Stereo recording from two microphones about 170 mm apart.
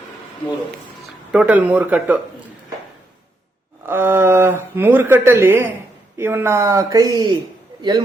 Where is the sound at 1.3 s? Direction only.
10° right (ahead or behind).